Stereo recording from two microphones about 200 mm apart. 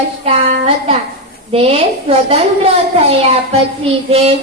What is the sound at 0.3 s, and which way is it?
A woman's voice, 30° right (ahead or behind).